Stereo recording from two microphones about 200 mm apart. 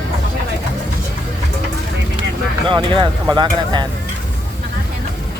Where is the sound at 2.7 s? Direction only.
25° right (ahead or behind).